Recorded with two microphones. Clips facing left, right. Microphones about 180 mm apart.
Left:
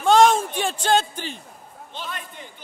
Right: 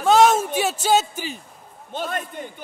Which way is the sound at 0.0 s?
5° right (ahead or behind).